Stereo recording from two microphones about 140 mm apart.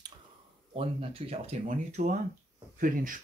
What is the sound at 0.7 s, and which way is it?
Speech, 45° right (ahead or behind).